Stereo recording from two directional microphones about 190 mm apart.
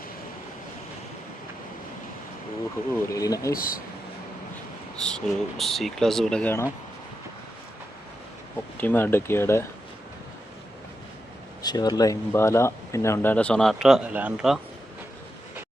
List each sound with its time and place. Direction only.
3.1 s speech: 20° left (ahead or behind)
3.5 s speech: 50° left (ahead or behind)
4.9 s speech: 5° left (ahead or behind)
8.8 s speech: 10° left (ahead or behind)
11.6 s speech: 20° left (ahead or behind); by 14.6 s 5° right (ahead or behind)